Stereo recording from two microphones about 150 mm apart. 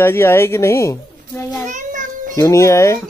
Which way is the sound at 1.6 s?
55° right (ahead or behind).